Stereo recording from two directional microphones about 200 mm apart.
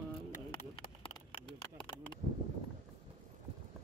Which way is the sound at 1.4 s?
25° left (ahead or behind).